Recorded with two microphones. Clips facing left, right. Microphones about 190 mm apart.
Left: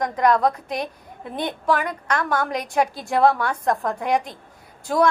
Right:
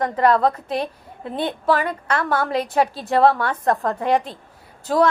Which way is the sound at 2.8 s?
15° left (ahead or behind).